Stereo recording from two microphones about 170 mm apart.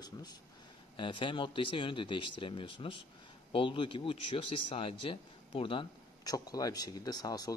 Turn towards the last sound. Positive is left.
turn(degrees=20)  # may be behind; listen again after turning